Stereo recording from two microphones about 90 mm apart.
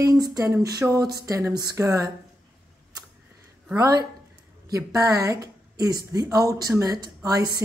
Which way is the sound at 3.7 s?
40° right (ahead or behind).